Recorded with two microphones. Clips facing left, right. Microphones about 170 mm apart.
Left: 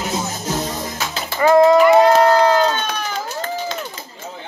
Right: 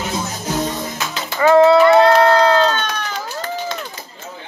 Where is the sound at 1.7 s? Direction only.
15° left (ahead or behind).